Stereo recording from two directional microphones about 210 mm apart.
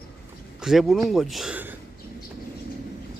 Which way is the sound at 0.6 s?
Centre (ahead or behind).